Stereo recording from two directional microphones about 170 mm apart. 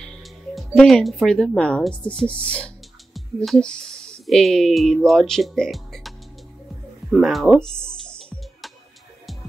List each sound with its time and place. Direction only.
0.6 s speech: 5° left (ahead or behind)
7.1 s music: centre (ahead or behind)